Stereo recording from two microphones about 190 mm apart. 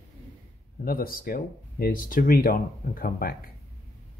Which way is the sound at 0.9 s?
50° left (ahead or behind).